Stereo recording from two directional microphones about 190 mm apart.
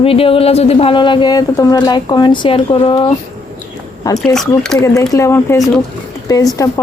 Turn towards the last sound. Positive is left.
turn(degrees=15)  # may be behind; listen again after turning